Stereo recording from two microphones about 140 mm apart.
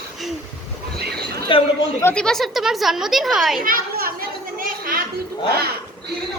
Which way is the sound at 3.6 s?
90° right.